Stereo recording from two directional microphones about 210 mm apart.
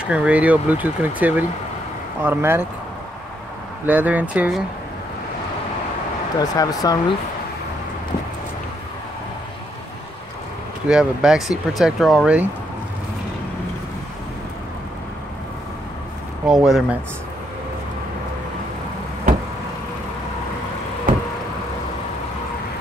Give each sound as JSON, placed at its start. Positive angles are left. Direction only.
{"t": 0.0, "sound": "speech", "side_deg": -5}
{"t": 3.8, "sound": "speech", "side_deg": -5}
{"t": 6.3, "sound": "speech", "side_deg": 15}
{"t": 10.9, "sound": "speech", "side_deg": -5}
{"t": 16.4, "sound": "speech", "side_deg": 0}